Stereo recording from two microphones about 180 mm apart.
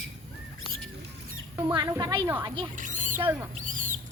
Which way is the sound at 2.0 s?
25° right (ahead or behind).